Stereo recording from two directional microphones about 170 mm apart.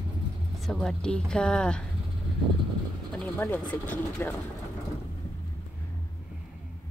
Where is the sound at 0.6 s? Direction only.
5° left (ahead or behind).